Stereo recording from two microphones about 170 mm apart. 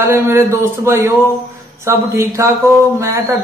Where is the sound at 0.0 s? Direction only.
15° right (ahead or behind).